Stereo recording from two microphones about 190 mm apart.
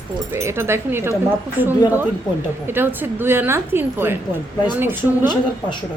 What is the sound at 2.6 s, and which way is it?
A woman's voice, 10° right (ahead or behind).